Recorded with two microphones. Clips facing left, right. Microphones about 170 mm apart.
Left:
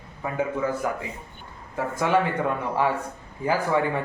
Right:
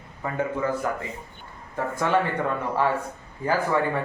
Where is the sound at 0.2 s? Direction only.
10° left (ahead or behind).